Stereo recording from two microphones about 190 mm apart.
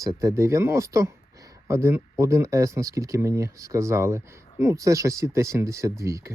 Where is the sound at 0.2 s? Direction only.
15° right (ahead or behind).